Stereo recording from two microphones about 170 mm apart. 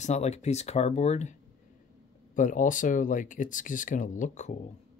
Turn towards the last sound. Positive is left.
turn(degrees=45)  # may be behind; listen again after turning